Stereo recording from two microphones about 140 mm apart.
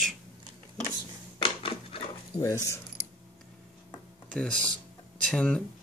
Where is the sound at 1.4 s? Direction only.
40° left (ahead or behind).